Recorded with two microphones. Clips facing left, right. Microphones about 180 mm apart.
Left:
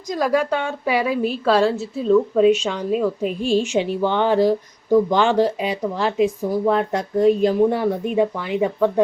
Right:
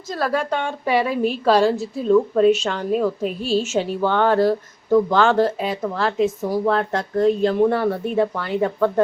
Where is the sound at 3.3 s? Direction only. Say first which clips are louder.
Left 2 dB; 35° right (ahead or behind).